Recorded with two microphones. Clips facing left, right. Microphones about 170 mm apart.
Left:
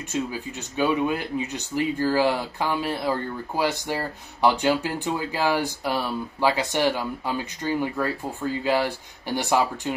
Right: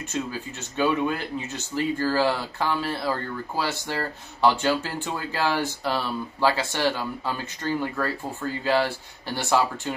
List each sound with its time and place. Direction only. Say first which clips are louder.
0.1 s speech: left 3 dB; 15° left (ahead or behind)